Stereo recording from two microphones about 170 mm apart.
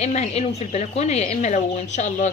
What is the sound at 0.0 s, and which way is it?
A woman's voice, 40° left (ahead or behind).